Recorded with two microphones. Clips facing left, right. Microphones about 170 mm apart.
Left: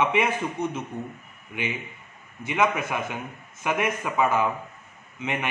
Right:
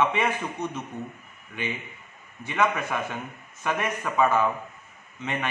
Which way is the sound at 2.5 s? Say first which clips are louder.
Left 1 dB; 10° left (ahead or behind).